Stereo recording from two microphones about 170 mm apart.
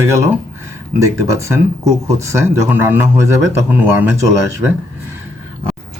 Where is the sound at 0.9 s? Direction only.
20° right (ahead or behind).